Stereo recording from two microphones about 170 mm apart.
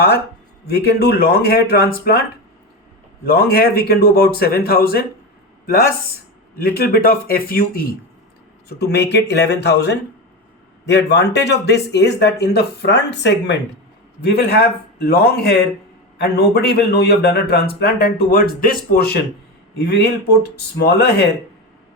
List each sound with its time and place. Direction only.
0.7 s a man's voice: 65° left (ahead or behind)
3.2 s a man's voice: 65° left (ahead or behind)
6.6 s a man's voice: 60° left (ahead or behind)
8.8 s speech: 75° left (ahead or behind)
14.2 s a man's voice: 70° left (ahead or behind)